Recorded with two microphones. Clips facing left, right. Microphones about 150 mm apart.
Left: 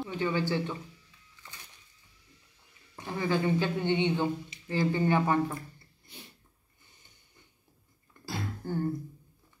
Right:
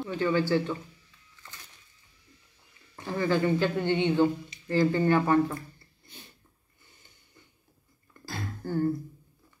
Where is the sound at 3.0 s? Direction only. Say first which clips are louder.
Right 3 dB; 20° left (ahead or behind).